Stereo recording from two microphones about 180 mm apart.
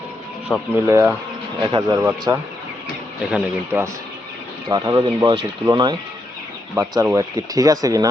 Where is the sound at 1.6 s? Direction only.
25° right (ahead or behind).